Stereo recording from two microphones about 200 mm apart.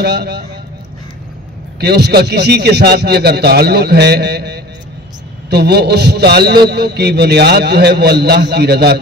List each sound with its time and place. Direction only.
0.0 s a man's voice: 55° right (ahead or behind)
1.8 s a man's voice: 55° right (ahead or behind)